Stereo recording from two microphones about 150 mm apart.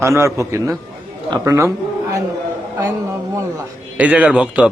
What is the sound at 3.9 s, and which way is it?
Speech, 10° right (ahead or behind).